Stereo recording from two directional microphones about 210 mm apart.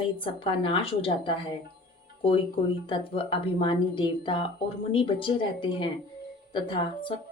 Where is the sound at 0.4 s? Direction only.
25° left (ahead or behind).